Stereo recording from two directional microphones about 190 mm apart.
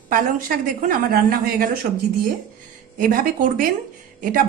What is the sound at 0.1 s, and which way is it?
Speech, 45° right (ahead or behind).